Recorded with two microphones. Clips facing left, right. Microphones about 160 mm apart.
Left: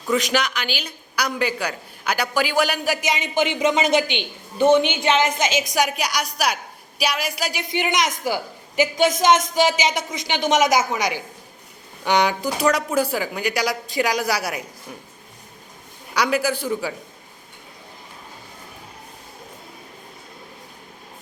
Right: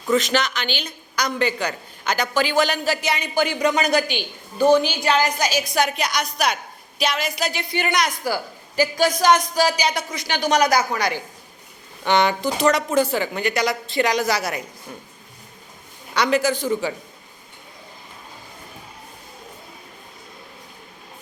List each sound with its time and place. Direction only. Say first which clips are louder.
0.1 s a woman's voice: right 1 dB; 10° left (ahead or behind)
5.7 s a woman's voice: even; 10° left (ahead or behind)
16.1 s a woman's voice: right 2 dB; 10° left (ahead or behind)